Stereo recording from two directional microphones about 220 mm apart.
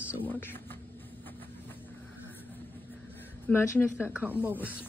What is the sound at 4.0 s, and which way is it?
Speech, 5° right (ahead or behind).